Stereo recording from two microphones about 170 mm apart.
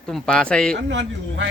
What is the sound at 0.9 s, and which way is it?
Speech, 90° right.